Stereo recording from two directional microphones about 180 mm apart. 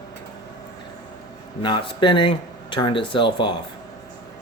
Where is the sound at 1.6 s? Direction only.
25° left (ahead or behind).